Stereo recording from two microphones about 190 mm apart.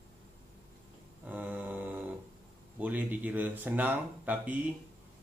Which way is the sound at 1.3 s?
10° right (ahead or behind).